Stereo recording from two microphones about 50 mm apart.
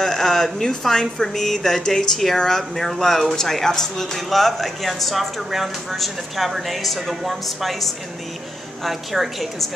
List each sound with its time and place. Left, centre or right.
0.0 s speech: centre
8.8 s speech: centre